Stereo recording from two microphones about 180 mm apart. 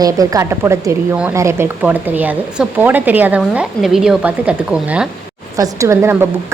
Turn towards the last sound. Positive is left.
turn(degrees=-15)  # may be behind; listen again after turning